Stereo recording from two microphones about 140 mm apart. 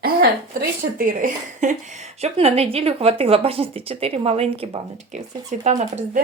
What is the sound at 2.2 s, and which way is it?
Speech, 45° right (ahead or behind).